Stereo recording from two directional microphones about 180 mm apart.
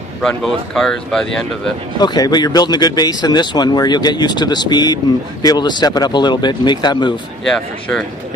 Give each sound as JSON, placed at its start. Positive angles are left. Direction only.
{"t": 0.2, "sound": "speech", "side_deg": 5}
{"t": 2.0, "sound": "speech", "side_deg": 20}